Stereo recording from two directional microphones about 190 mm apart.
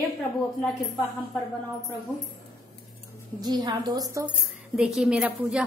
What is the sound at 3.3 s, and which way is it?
Speech, 20° right (ahead or behind).